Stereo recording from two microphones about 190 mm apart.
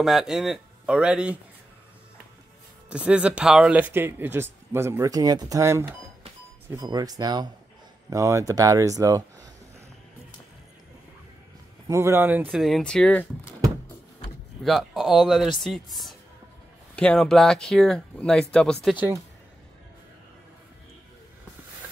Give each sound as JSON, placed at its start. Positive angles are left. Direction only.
{"t": 0.0, "sound": "speech", "side_deg": 0}
{"t": 2.9, "sound": "speech", "side_deg": -5}
{"t": 11.9, "sound": "speech", "side_deg": -15}
{"t": 12.4, "sound": "speech", "side_deg": 0}
{"t": 14.6, "sound": "speech", "side_deg": 0}